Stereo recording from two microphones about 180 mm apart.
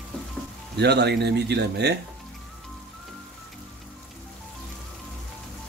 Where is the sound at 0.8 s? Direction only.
70° right (ahead or behind).